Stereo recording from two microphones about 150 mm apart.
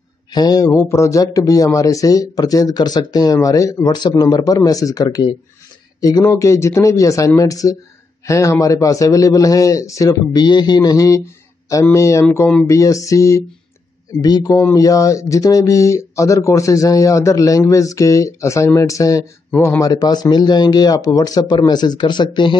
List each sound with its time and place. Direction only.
0.3 s speech: 25° left (ahead or behind)
19.8 s speech: 25° left (ahead or behind)